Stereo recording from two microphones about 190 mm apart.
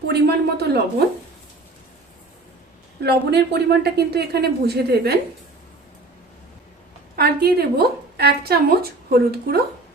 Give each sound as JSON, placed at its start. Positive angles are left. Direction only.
{"t": 0.1, "sound": "speech", "side_deg": -60}
{"t": 3.0, "sound": "speech", "side_deg": -60}
{"t": 7.2, "sound": "speech", "side_deg": -55}